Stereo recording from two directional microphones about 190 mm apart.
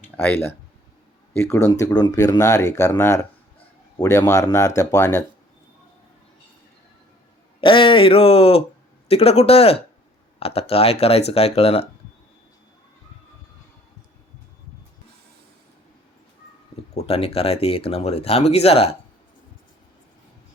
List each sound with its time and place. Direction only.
0.2 s speech: 10° left (ahead or behind)
7.6 s speech: 25° left (ahead or behind)
16.9 s speech: 35° left (ahead or behind)